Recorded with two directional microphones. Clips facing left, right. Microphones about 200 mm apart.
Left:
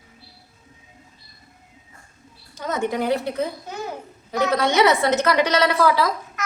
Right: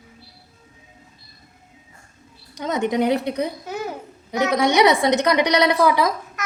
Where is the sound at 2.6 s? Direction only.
15° right (ahead or behind).